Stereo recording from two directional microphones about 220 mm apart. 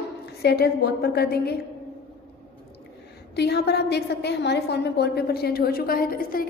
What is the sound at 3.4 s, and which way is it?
A woman's voice, 50° left (ahead or behind).